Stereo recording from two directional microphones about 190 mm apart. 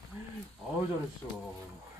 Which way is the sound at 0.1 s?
15° right (ahead or behind).